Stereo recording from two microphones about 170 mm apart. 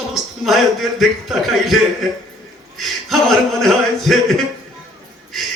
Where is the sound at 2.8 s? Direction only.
Centre (ahead or behind).